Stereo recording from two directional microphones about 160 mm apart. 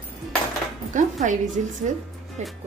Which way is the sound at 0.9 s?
50° right (ahead or behind).